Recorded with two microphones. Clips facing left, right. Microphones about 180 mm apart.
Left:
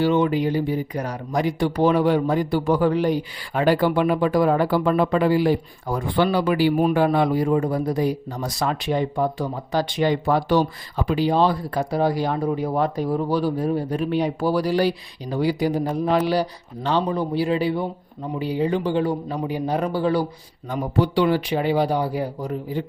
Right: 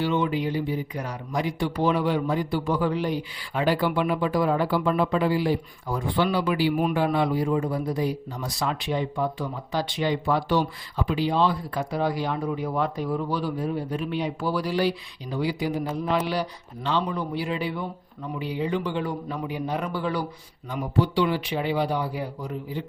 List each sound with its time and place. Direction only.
0.0 s a man's voice: 45° left (ahead or behind)
20.7 s speech: 50° left (ahead or behind)